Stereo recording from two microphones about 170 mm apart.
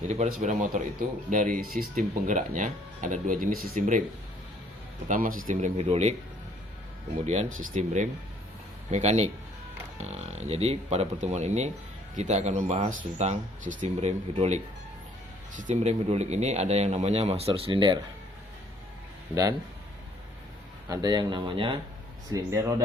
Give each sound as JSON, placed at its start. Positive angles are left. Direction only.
{"t": 0.1, "sound": "speech", "side_deg": -45}
{"t": 5.0, "sound": "speech", "side_deg": -50}
{"t": 7.3, "sound": "speech", "side_deg": -45}
{"t": 19.3, "sound": "speech", "side_deg": -20}
{"t": 20.9, "sound": "speech", "side_deg": -25}
{"t": 22.3, "sound": "speech", "side_deg": -20}